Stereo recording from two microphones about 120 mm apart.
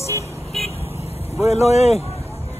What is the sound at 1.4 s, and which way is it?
Speech, 60° left (ahead or behind).